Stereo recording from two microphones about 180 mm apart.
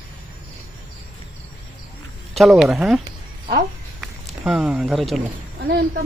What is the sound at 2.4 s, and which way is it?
Speech, centre (ahead or behind).